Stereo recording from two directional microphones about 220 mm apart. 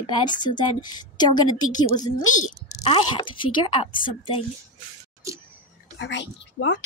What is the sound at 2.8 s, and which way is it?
A woman's voice, 25° left (ahead or behind).